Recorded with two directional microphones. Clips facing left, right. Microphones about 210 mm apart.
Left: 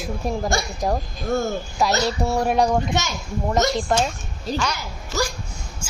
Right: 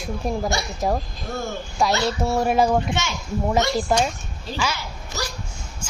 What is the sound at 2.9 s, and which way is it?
Speech, 40° left (ahead or behind).